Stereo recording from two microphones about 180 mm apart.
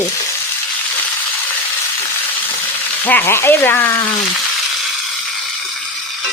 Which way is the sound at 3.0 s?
10° left (ahead or behind).